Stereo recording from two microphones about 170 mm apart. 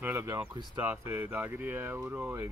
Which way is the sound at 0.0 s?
15° right (ahead or behind).